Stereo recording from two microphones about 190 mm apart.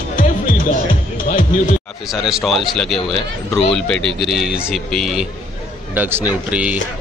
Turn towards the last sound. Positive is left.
turn(degrees=-5)  # may be behind; listen again after turning